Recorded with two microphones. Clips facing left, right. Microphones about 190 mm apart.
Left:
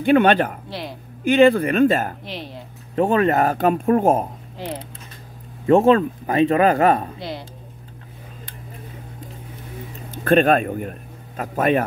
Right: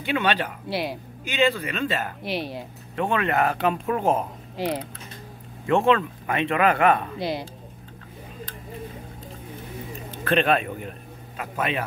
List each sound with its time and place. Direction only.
0.0 s speech: 50° left (ahead or behind)
0.7 s speech: 10° right (ahead or behind)
1.2 s speech: 55° left (ahead or behind)
2.2 s speech: 10° right (ahead or behind)
3.0 s speech: 40° left (ahead or behind)
4.6 s speech: 10° right (ahead or behind)
5.7 s speech: 40° left (ahead or behind)
7.2 s speech: 10° right (ahead or behind)
10.2 s speech: 45° left (ahead or behind)